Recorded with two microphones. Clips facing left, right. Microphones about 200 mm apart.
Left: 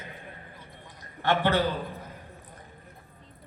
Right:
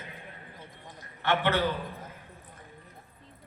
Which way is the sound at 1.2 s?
40° left (ahead or behind).